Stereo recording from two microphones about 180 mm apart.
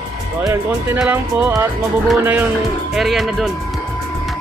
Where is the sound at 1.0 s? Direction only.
10° right (ahead or behind).